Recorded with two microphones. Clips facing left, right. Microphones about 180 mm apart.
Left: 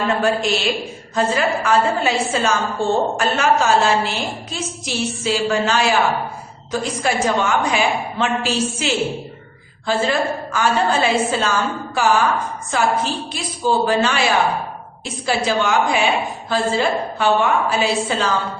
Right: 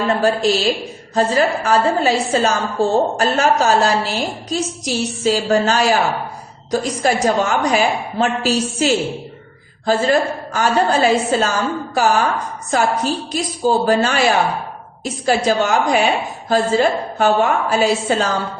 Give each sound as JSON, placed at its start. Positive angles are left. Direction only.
{"t": 0.1, "sound": "a woman's voice", "side_deg": -35}